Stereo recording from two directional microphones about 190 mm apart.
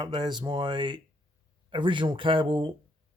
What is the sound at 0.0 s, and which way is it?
Speech, 25° right (ahead or behind).